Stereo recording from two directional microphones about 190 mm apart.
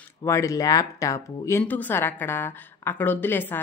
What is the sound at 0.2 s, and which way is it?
Speech, 15° left (ahead or behind).